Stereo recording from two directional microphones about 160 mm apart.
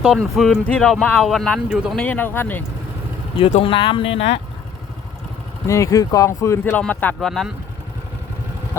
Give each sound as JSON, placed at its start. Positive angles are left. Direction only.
{"t": 0.0, "sound": "speech", "side_deg": 0}
{"t": 2.0, "sound": "speech", "side_deg": 10}
{"t": 3.3, "sound": "speech", "side_deg": 35}
{"t": 5.6, "sound": "speech", "side_deg": 20}